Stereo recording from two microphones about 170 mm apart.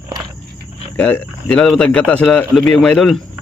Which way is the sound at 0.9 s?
10° left (ahead or behind).